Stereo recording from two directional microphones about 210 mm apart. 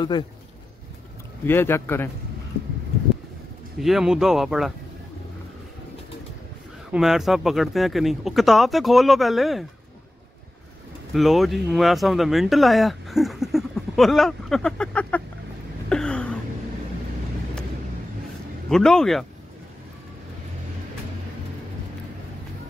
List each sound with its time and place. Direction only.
1.4 s speech: 10° left (ahead or behind)
3.8 s speech: centre (ahead or behind)
6.9 s speech: centre (ahead or behind)
11.1 s speech: centre (ahead or behind)
15.9 s a sound: 5° left (ahead or behind)
18.7 s speech: centre (ahead or behind)